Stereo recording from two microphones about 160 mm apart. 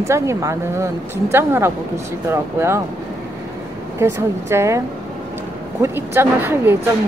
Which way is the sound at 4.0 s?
15° right (ahead or behind).